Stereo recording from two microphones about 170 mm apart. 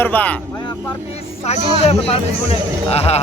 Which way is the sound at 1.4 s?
40° left (ahead or behind).